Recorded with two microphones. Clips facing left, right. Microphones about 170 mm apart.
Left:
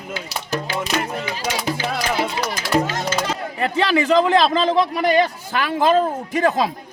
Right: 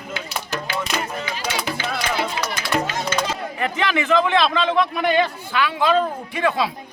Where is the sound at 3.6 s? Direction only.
35° left (ahead or behind).